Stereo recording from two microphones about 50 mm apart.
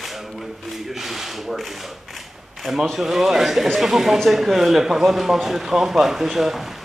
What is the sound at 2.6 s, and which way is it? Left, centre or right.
A man's voice, centre.